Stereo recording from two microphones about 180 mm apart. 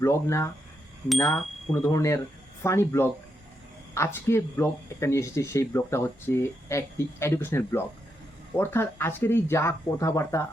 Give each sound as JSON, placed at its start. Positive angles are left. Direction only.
{"t": 0.0, "sound": "speech", "side_deg": 15}
{"t": 1.7, "sound": "speech", "side_deg": 15}